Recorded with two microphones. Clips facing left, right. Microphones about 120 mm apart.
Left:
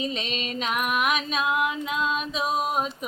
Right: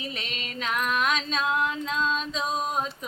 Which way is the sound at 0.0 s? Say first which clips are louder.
Left 6 dB; 20° left (ahead or behind).